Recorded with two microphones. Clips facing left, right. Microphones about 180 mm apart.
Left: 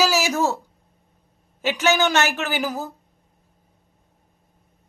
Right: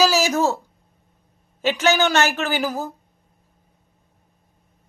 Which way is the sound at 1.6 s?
15° left (ahead or behind).